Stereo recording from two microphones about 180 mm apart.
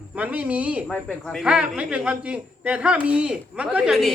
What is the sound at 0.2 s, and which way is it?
Speech, 10° right (ahead or behind).